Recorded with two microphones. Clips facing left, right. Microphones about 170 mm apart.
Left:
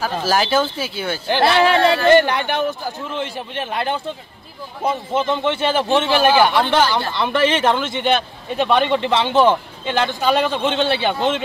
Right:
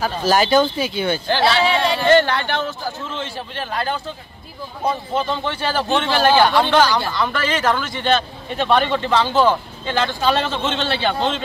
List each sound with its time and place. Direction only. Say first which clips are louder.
0.0 s speech: right 2 dB; 5° left (ahead or behind)
1.4 s speech: left 4 dB; 55° left (ahead or behind)
2.0 s a man's voice: left 1 dB; 15° left (ahead or behind)